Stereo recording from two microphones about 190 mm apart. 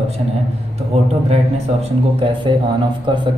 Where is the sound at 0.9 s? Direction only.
30° right (ahead or behind).